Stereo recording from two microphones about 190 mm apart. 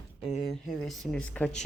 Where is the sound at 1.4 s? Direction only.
10° left (ahead or behind).